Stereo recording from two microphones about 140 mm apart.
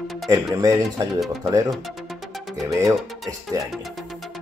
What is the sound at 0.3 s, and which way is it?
Speech, 25° right (ahead or behind).